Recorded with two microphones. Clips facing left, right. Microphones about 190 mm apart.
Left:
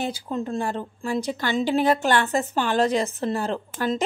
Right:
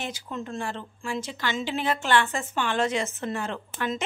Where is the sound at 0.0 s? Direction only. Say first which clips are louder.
Left 6 dB; 35° left (ahead or behind).